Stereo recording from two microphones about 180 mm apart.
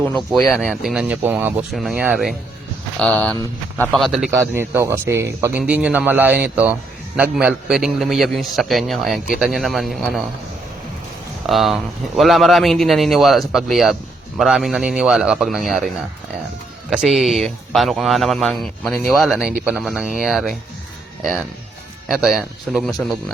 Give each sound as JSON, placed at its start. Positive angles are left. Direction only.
{"t": 0.0, "sound": "speech", "side_deg": 0}
{"t": 3.0, "sound": "speech", "side_deg": 5}
{"t": 4.3, "sound": "speech", "side_deg": -15}
{"t": 11.4, "sound": "speech", "side_deg": 0}
{"t": 16.9, "sound": "speech", "side_deg": -5}
{"t": 22.1, "sound": "speech", "side_deg": -5}